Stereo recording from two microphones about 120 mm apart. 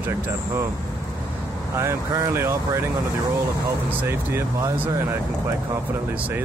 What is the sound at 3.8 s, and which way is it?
Speech, 20° right (ahead or behind).